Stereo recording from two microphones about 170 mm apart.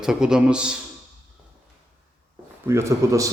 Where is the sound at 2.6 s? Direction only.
15° right (ahead or behind).